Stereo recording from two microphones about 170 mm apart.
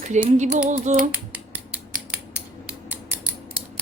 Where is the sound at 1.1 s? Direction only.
5° right (ahead or behind).